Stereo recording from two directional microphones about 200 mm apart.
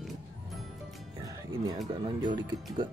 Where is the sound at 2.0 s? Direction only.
25° right (ahead or behind).